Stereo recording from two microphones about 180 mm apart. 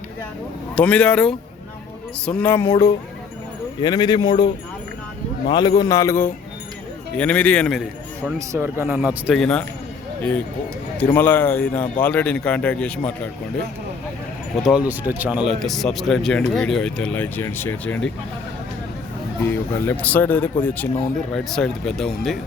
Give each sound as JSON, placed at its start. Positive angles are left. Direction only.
{"t": 0.8, "sound": "a man's voice", "side_deg": 5}
{"t": 8.4, "sound": "speech", "side_deg": -10}
{"t": 10.9, "sound": "a man's voice", "side_deg": 10}
{"t": 14.6, "sound": "speech", "side_deg": -5}
{"t": 19.4, "sound": "a man's voice", "side_deg": 10}